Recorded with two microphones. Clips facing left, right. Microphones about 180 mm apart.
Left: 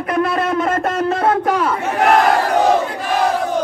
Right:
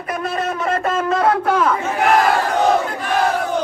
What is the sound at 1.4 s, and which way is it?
Speech, 15° left (ahead or behind).